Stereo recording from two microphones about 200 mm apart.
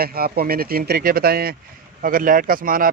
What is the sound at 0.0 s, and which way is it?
Speech, 50° right (ahead or behind).